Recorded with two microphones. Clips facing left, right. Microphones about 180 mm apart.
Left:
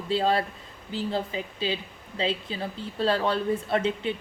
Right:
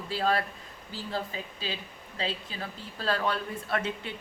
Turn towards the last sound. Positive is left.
turn(degrees=25)  # may be behind; listen again after turning